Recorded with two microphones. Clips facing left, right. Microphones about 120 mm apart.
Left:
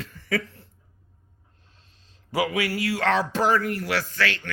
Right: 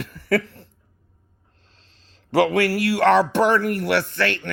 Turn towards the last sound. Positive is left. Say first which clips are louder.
# right 4 dB
turn(degrees=-60)  # may be behind; listen again after turning